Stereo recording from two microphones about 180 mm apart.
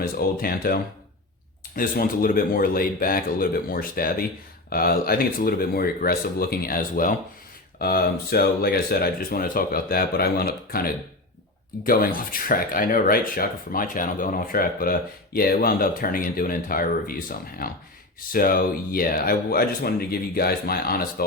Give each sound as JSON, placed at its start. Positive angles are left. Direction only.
{"t": 0.0, "sound": "speech", "side_deg": 55}